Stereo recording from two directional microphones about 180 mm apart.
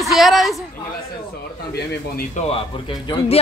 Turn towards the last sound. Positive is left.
turn(degrees=30)  # may be behind; listen again after turning